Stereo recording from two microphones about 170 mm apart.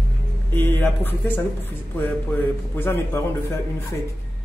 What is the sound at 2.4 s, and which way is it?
Speech, 15° left (ahead or behind).